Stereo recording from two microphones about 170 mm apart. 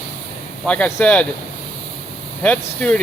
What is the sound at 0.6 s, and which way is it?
Speech, 5° left (ahead or behind).